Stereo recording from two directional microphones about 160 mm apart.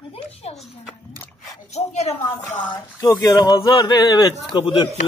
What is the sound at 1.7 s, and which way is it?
Speech, 40° left (ahead or behind).